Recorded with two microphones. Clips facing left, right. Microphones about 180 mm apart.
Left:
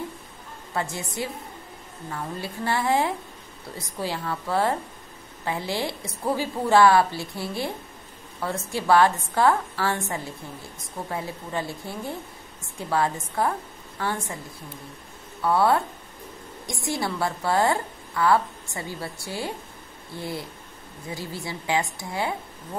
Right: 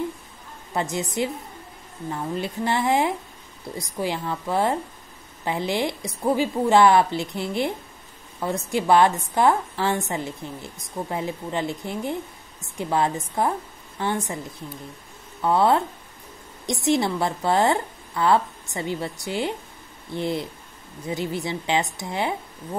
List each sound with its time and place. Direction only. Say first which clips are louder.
0.7 s a woman's voice: right 4 dB; 20° right (ahead or behind)
15.4 s a woman's voice: right 2 dB; 20° right (ahead or behind)